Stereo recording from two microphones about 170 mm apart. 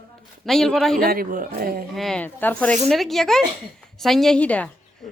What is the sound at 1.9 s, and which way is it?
A woman's voice, centre (ahead or behind).